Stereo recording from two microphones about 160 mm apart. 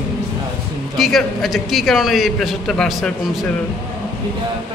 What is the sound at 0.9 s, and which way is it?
A man's voice, centre (ahead or behind).